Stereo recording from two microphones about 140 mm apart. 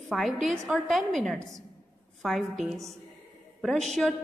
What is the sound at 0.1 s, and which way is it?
A woman's voice, centre (ahead or behind).